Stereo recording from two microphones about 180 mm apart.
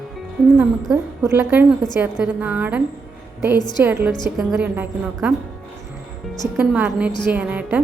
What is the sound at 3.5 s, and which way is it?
Speech, 25° left (ahead or behind).